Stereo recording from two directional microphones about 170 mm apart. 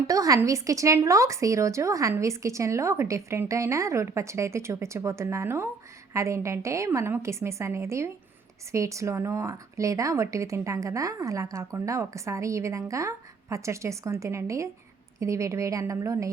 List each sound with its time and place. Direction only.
0.1 s speech: 20° right (ahead or behind)